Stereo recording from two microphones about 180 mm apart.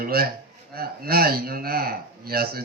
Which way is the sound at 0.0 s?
55° right (ahead or behind).